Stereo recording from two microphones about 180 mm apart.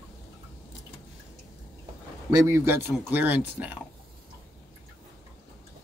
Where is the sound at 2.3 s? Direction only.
15° right (ahead or behind).